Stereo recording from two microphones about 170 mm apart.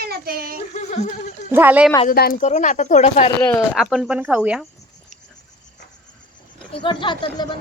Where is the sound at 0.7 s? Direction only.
40° left (ahead or behind).